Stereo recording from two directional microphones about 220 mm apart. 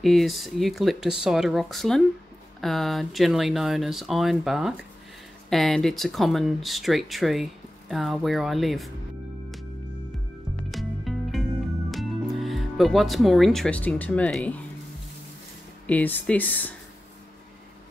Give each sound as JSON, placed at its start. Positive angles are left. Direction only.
{"t": 0.0, "sound": "speech", "side_deg": 0}
{"t": 10.7, "sound": "music", "side_deg": 0}
{"t": 11.9, "sound": "speech", "side_deg": 0}
{"t": 15.9, "sound": "speech", "side_deg": 5}